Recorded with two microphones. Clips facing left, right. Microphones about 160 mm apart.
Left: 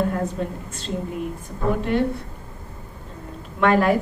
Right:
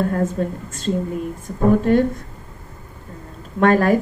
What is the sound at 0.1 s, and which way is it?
A woman's voice, 45° right (ahead or behind).